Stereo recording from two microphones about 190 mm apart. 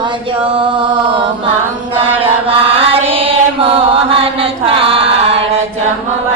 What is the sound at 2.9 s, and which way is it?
Music, 30° right (ahead or behind).